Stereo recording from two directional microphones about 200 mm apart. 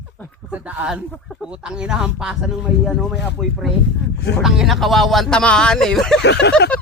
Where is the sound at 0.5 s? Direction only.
5° right (ahead or behind).